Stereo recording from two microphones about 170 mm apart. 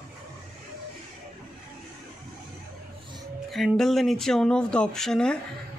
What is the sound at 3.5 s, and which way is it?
Speech, centre (ahead or behind).